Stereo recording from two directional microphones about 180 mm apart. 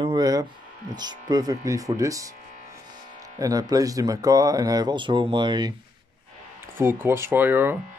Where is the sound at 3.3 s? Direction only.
20° right (ahead or behind).